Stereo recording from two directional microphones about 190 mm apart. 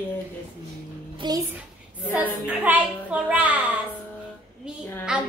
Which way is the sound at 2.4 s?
10° right (ahead or behind).